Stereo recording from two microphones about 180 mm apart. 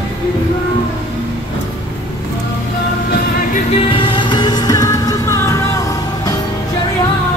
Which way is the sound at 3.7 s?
30° left (ahead or behind).